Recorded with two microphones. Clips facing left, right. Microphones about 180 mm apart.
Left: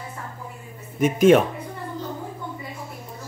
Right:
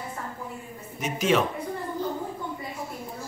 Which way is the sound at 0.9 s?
50° left (ahead or behind).